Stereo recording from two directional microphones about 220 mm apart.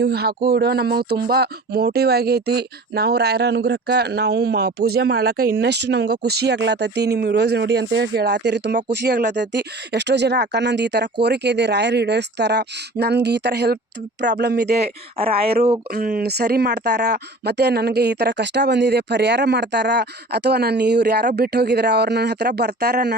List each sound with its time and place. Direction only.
0.0 s speech: 45° right (ahead or behind)
15.2 s speech: 25° right (ahead or behind)
15.9 s speech: 45° right (ahead or behind)